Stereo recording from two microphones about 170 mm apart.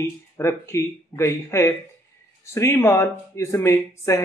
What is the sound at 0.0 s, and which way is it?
Speech, 15° left (ahead or behind).